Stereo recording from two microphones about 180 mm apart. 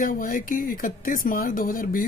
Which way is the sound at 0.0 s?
50° left (ahead or behind).